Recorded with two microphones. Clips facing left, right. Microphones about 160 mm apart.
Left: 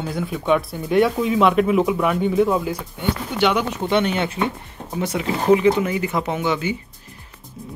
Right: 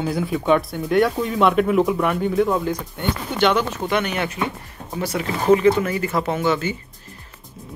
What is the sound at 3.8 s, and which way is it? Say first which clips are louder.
Speech: left 2 dB; 25° left (ahead or behind).